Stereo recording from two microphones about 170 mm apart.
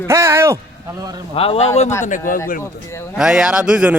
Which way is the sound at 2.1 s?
50° left (ahead or behind).